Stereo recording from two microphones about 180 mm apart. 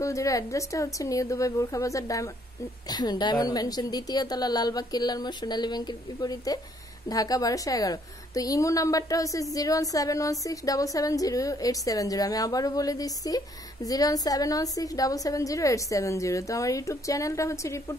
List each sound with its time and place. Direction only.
0.0 s a woman's voice: 15° left (ahead or behind)